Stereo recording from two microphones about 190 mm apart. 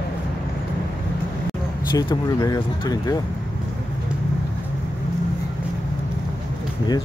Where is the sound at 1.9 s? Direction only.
20° left (ahead or behind).